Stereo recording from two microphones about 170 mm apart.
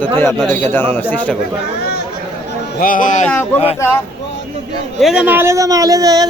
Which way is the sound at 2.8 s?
55° left (ahead or behind).